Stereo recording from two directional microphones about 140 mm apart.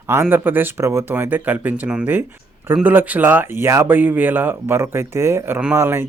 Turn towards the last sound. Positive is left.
turn(degrees=-15)  # may be behind; listen again after turning